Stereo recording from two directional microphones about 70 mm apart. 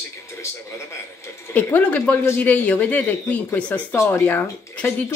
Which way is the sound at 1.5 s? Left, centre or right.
Left.